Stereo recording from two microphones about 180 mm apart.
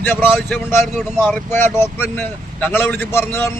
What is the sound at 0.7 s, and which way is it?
Speech, centre (ahead or behind).